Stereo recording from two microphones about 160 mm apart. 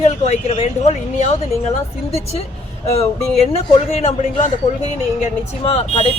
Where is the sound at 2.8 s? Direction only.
40° left (ahead or behind).